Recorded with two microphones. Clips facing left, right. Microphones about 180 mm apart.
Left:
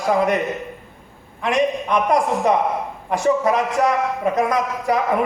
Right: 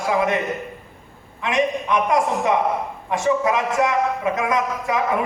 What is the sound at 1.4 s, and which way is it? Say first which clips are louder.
A man's voice: left 2 dB; 40° left (ahead or behind).